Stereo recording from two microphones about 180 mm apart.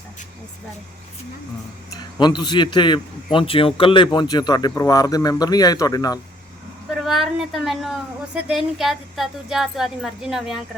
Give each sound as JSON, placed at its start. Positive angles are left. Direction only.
{"t": 2.1, "sound": "speech", "side_deg": 25}
{"t": 7.0, "sound": "speech", "side_deg": 0}